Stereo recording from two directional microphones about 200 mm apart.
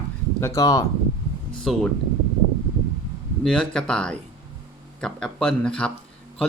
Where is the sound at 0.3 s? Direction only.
15° left (ahead or behind).